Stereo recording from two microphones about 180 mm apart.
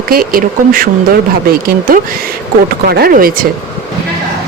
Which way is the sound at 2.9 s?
55° right (ahead or behind).